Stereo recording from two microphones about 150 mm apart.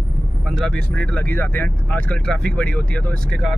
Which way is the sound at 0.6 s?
5° left (ahead or behind).